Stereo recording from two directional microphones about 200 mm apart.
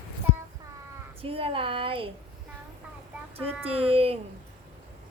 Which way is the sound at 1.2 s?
30° right (ahead or behind).